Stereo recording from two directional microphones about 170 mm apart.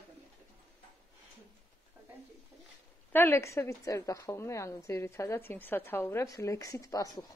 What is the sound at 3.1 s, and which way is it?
A woman's voice, 15° left (ahead or behind).